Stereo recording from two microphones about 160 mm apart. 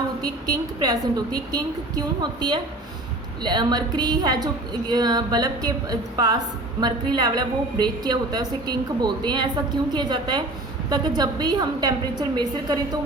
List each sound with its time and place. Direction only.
0.2 s a woman's voice: 25° right (ahead or behind)
3.4 s a woman's voice: 25° right (ahead or behind)